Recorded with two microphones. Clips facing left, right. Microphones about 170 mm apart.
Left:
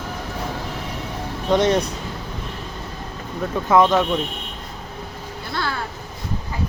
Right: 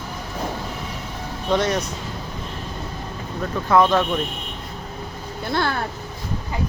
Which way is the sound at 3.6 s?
15° left (ahead or behind).